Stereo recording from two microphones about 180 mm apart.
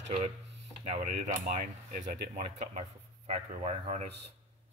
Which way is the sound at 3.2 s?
35° right (ahead or behind).